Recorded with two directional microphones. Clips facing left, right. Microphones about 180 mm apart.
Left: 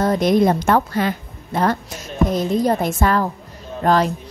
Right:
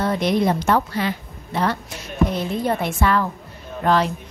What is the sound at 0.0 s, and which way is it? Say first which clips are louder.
A woman's voice: left 4 dB; 45° left (ahead or behind).